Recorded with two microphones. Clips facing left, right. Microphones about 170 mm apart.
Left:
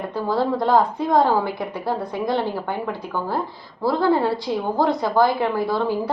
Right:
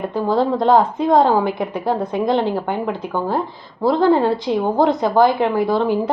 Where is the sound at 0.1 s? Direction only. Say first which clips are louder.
Right 3 dB; 20° right (ahead or behind).